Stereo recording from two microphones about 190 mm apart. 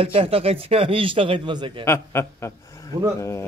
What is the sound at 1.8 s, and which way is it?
A man's voice, 15° left (ahead or behind).